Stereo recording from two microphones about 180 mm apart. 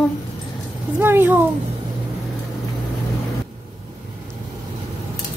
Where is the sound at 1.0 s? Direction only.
10° right (ahead or behind).